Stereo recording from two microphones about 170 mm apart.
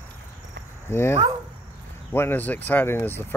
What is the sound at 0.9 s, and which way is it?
Speech, 15° left (ahead or behind).